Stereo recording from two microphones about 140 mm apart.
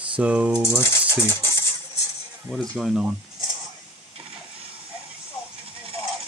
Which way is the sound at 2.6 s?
Centre (ahead or behind).